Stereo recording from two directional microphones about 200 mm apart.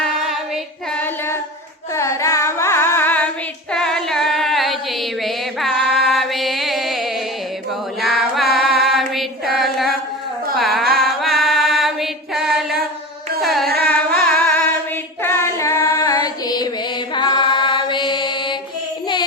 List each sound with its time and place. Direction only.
0.0 s a sound: centre (ahead or behind)
1.9 s carnatic music: 15° left (ahead or behind)
3.7 s child singing: 5° left (ahead or behind)
8.0 s female singing: centre (ahead or behind)
10.6 s music: centre (ahead or behind)
13.4 s carnatic music: centre (ahead or behind)
14.3 s singing: 10° left (ahead or behind)
15.2 s female singing: 15° left (ahead or behind)
17.2 s mantra: 20° left (ahead or behind)